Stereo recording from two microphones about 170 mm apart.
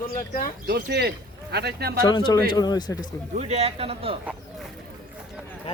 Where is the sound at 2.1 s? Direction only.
25° left (ahead or behind).